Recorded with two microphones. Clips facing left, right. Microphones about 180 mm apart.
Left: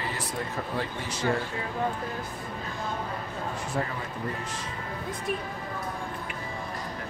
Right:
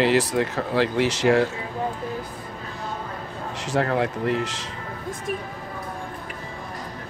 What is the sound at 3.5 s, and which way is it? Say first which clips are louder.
Speech: right 11 dB; 85° right.